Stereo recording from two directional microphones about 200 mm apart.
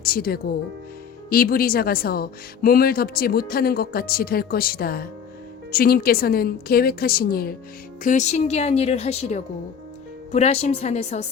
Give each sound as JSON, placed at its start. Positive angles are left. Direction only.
{"t": 0.0, "sound": "speech", "side_deg": 50}
{"t": 8.0, "sound": "a woman's voice", "side_deg": 35}